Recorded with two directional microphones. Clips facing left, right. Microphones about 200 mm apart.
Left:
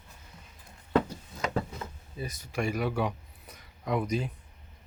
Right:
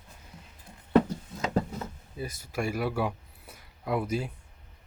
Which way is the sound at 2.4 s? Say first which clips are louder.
Even; 5° right (ahead or behind).